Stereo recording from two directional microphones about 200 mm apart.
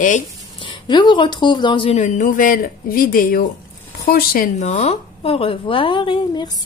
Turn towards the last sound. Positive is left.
turn(degrees=20)  # may be behind; listen again after turning